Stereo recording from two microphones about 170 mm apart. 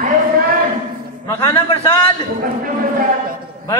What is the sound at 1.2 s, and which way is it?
Speech, 20° left (ahead or behind).